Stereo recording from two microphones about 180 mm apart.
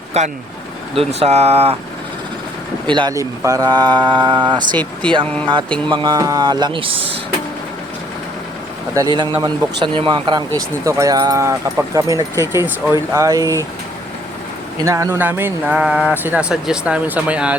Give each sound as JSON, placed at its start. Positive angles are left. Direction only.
{"t": 0.1, "sound": "speech", "side_deg": -40}
{"t": 2.8, "sound": "speech", "side_deg": -25}
{"t": 5.2, "sound": "speech", "side_deg": 5}
{"t": 5.9, "sound": "speech", "side_deg": -25}
{"t": 9.0, "sound": "speech", "side_deg": -25}
{"t": 14.8, "sound": "speech", "side_deg": -15}